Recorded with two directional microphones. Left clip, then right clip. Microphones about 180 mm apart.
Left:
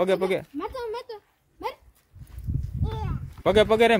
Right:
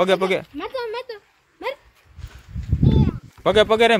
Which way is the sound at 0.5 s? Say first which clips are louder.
Right 4 dB; 75° left (ahead or behind).